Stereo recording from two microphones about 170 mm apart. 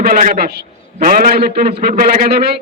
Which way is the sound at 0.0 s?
60° right (ahead or behind).